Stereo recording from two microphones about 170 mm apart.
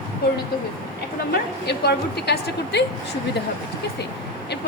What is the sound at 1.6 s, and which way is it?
A woman's voice, 70° left (ahead or behind).